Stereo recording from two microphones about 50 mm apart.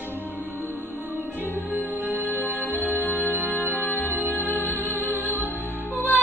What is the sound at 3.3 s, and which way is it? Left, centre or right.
Music, right.